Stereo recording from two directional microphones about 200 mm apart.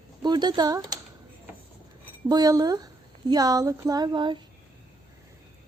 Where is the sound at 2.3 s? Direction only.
20° right (ahead or behind).